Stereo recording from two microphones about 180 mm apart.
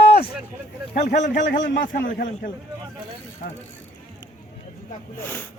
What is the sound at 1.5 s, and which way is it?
Speech, 90° left.